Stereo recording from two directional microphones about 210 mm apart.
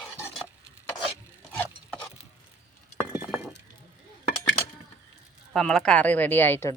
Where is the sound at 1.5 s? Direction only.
5° left (ahead or behind).